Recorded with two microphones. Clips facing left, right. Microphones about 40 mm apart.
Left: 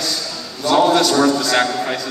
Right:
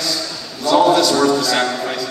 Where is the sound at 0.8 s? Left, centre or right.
Centre.